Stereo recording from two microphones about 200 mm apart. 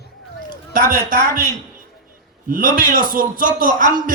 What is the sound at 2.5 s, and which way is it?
Speech, 45° right (ahead or behind).